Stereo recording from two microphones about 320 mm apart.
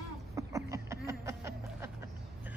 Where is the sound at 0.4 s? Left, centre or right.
Centre.